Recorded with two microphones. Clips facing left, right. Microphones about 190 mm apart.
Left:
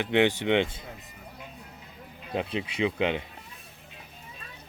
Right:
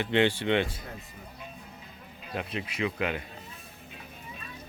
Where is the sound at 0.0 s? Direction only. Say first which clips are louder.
Left 2 dB; 15° left (ahead or behind).